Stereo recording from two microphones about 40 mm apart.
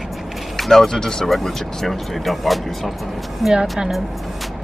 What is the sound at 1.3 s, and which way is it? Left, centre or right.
Speech, centre.